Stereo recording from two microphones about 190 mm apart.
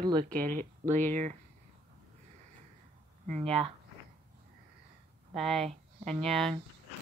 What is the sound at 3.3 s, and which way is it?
Speech, 30° right (ahead or behind).